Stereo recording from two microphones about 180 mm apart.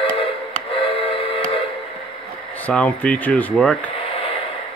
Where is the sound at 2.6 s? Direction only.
5° left (ahead or behind).